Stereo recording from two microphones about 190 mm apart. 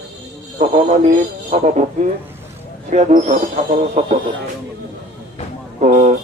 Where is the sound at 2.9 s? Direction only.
35° right (ahead or behind).